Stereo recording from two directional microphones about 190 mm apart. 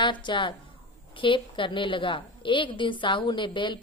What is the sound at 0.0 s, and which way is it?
A woman's voice, 25° left (ahead or behind).